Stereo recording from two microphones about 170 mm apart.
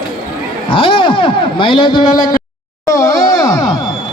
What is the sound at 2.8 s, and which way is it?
Groan, 20° left (ahead or behind).